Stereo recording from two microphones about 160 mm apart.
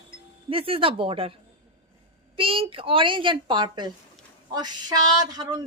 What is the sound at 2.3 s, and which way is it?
A woman's voice, 35° right (ahead or behind).